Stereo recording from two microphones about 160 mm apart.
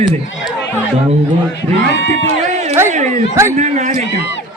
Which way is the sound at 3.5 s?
50° right (ahead or behind).